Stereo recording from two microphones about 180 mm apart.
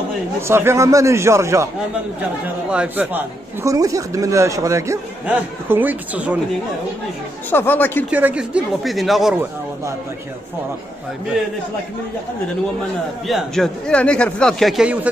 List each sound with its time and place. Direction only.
0.5 s speech: 15° right (ahead or behind)
2.7 s speech: 5° right (ahead or behind)
7.5 s speech: 10° left (ahead or behind)
8.1 s speech: 10° right (ahead or behind)
13.3 s a man's voice: centre (ahead or behind)